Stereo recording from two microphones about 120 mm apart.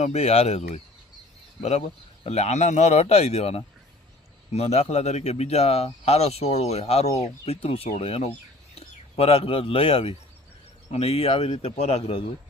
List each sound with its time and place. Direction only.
0.0 s speech: 65° left (ahead or behind)
2.2 s speech: 65° left (ahead or behind)